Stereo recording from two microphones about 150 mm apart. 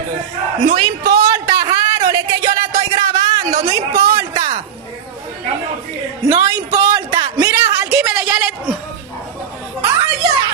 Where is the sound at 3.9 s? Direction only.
80° right.